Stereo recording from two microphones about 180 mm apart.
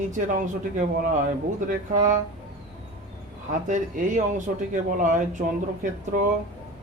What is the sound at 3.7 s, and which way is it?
Speech, 45° right (ahead or behind).